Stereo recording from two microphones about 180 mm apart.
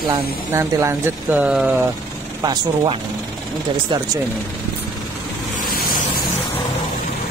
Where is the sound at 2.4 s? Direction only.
25° right (ahead or behind).